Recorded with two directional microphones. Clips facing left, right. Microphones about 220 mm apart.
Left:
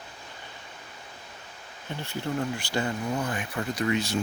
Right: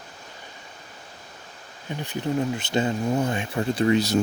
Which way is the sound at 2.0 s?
15° right (ahead or behind).